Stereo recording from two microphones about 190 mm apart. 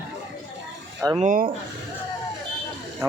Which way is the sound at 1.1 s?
45° right (ahead or behind).